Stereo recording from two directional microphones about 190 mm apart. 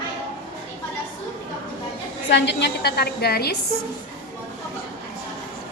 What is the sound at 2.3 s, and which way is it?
A woman's voice, 65° left (ahead or behind).